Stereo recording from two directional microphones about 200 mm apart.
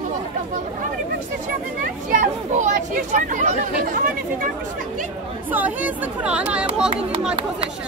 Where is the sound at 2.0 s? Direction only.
35° right (ahead or behind).